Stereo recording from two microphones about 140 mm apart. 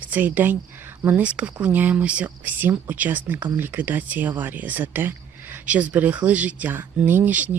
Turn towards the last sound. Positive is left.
turn(degrees=-10)  # may be behind; listen again after turning